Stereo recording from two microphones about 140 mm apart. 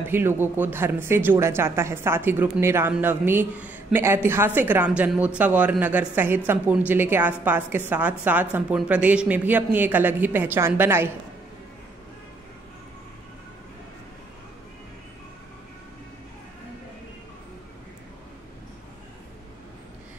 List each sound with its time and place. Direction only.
0.1 s a man's voice: 15° right (ahead or behind)